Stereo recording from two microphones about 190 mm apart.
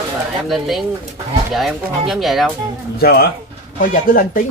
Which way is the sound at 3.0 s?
55° left (ahead or behind).